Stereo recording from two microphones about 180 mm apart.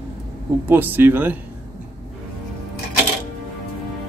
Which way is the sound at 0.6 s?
10° right (ahead or behind).